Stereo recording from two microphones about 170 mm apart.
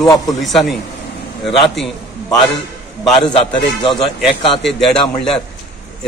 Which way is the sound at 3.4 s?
30° left (ahead or behind).